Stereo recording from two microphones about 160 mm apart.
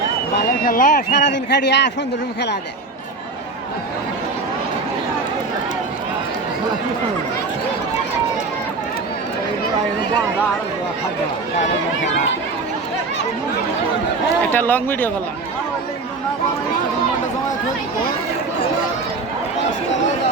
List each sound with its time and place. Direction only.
0.6 s a man's voice: 65° left (ahead or behind); by 1.9 s 90° left
14.5 s speech: 15° left (ahead or behind)